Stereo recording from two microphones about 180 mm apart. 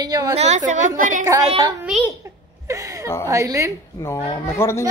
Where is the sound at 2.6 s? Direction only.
20° right (ahead or behind).